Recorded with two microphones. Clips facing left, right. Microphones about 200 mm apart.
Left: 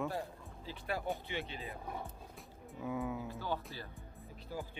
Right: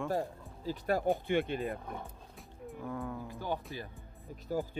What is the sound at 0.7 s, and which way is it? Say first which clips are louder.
Speech: right 8 dB; 45° right (ahead or behind).